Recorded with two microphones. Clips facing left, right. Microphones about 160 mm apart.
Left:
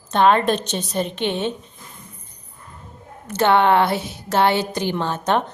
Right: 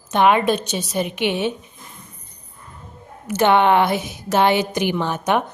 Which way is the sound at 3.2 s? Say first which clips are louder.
Right 1 dB; 15° right (ahead or behind).